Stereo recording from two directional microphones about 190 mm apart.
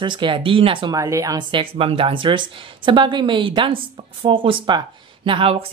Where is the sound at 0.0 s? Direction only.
25° right (ahead or behind).